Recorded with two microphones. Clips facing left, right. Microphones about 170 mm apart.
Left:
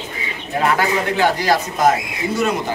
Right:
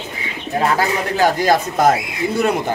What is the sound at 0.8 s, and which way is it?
Speech, 40° right (ahead or behind).